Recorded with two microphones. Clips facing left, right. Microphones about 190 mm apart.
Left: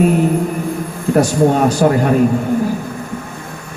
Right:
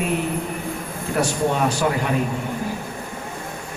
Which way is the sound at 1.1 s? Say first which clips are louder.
Left 9 dB; 40° left (ahead or behind).